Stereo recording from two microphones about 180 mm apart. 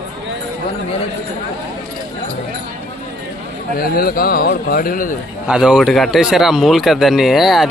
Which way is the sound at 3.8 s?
55° left (ahead or behind).